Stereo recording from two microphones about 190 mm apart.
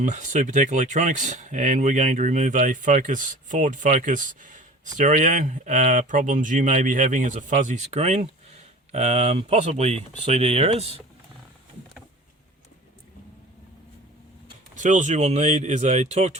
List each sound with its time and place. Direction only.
0.0 s speech: 40° right (ahead or behind)
14.8 s speech: 40° right (ahead or behind)